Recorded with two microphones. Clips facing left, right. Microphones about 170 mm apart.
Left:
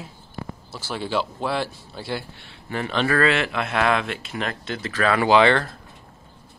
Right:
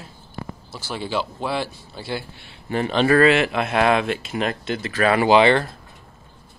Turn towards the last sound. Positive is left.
turn(degrees=-15)  # may be behind; listen again after turning